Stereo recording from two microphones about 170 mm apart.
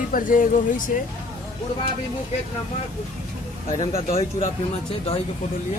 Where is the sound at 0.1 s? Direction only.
50° left (ahead or behind).